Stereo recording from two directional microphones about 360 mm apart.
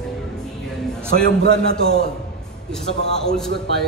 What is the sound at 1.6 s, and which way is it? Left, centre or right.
A man's voice, centre.